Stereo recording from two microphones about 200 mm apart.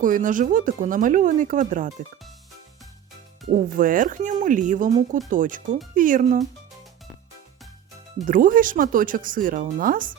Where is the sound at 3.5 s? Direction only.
40° right (ahead or behind).